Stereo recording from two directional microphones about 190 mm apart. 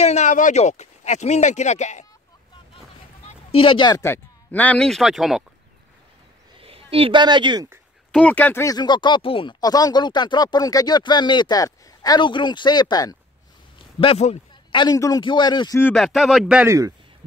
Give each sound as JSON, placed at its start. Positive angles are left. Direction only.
{"t": 0.0, "sound": "speech", "side_deg": 35}
{"t": 3.3, "sound": "speech", "side_deg": 30}
{"t": 6.6, "sound": "a woman's voice", "side_deg": -30}
{"t": 8.1, "sound": "a man's voice", "side_deg": 5}
{"t": 15.8, "sound": "speech", "side_deg": 0}